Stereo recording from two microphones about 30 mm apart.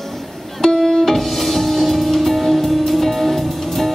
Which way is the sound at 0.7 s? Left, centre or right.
Centre.